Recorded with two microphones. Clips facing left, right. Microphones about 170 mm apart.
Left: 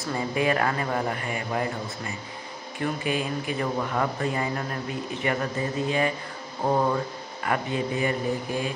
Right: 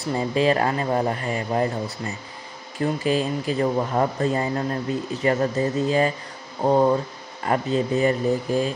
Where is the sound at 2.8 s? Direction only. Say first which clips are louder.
Right 5 dB; 30° right (ahead or behind).